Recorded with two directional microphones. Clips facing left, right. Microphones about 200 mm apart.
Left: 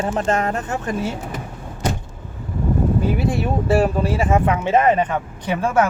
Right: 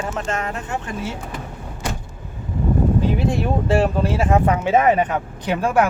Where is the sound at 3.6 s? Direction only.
5° left (ahead or behind).